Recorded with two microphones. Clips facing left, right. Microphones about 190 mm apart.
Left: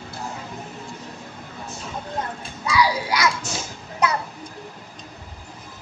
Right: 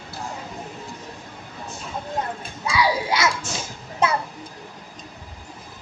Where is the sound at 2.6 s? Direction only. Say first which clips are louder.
Left 1 dB; 25° right (ahead or behind).